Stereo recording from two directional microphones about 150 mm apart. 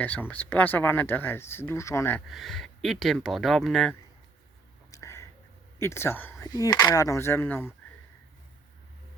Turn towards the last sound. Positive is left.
turn(degrees=15)  # may be behind; listen again after turning